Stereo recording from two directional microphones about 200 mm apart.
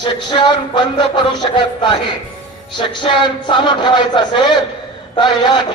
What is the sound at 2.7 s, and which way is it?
Speech, 25° left (ahead or behind).